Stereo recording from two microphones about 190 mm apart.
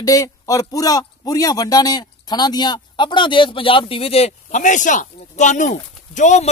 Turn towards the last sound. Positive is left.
turn(degrees=40)  # may be behind; listen again after turning